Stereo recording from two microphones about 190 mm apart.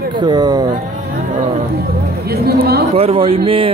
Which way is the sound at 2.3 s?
55° right (ahead or behind).